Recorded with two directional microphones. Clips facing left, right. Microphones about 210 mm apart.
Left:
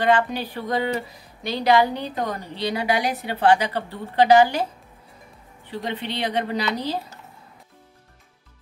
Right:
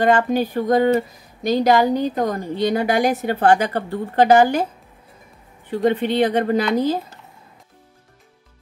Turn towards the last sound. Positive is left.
turn(degrees=-50)  # may be behind; listen again after turning